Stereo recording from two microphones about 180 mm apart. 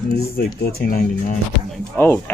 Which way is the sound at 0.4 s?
55° left (ahead or behind).